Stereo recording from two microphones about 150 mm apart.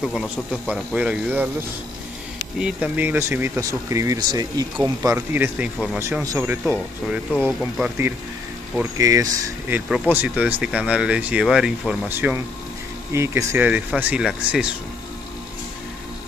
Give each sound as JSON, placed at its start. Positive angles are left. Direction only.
{"t": 0.0, "sound": "speech", "side_deg": 0}
{"t": 2.6, "sound": "speech", "side_deg": -10}
{"t": 7.3, "sound": "speech", "side_deg": 5}
{"t": 8.9, "sound": "speech", "side_deg": -20}
{"t": 9.8, "sound": "speech", "side_deg": -5}